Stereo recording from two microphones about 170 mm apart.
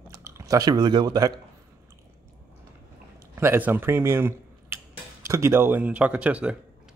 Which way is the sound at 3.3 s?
15° right (ahead or behind).